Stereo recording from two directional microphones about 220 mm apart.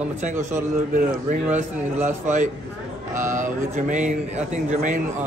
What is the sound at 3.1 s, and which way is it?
Speech, 35° right (ahead or behind).